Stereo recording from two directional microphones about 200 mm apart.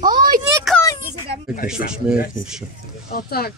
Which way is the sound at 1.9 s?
5° right (ahead or behind).